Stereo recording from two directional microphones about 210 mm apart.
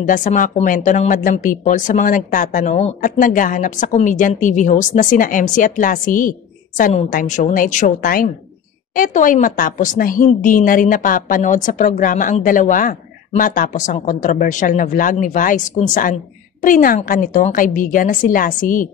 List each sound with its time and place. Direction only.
0.1 s a woman's voice: 40° left (ahead or behind)